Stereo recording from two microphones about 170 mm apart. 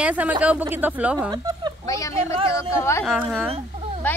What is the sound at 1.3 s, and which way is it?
Speech, 25° right (ahead or behind).